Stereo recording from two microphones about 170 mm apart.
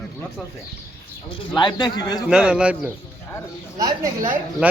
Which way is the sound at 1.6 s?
25° left (ahead or behind).